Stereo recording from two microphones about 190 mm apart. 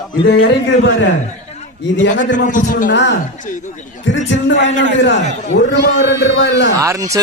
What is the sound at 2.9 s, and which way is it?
A man's voice, 70° left (ahead or behind).